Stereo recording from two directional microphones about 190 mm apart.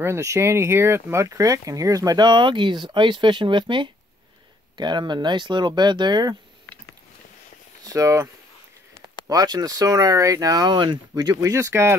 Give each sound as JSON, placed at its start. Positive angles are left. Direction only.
{"t": 0.0, "sound": "speech", "side_deg": -15}
{"t": 7.8, "sound": "speech", "side_deg": -15}
{"t": 9.3, "sound": "speech", "side_deg": -20}